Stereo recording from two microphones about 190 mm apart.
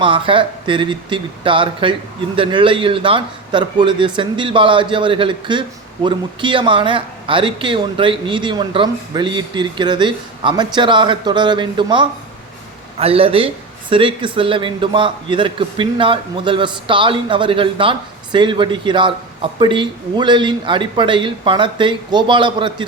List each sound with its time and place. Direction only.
0.0 s speech: 25° right (ahead or behind)